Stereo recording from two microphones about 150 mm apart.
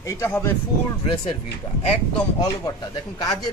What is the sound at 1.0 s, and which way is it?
Speech, 35° left (ahead or behind).